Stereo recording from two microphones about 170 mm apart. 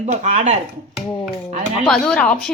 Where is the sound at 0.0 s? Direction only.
45° right (ahead or behind).